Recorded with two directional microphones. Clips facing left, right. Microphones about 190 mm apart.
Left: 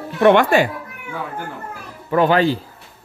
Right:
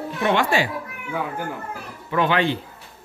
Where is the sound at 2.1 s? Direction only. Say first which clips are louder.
Left 5 dB; 40° left (ahead or behind).